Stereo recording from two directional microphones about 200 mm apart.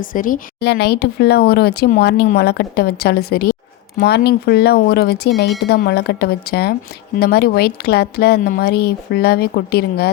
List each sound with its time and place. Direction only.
0.1 s speech: 45° left (ahead or behind)